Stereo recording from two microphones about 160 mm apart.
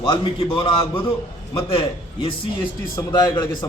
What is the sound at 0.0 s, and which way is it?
Speech, 35° left (ahead or behind).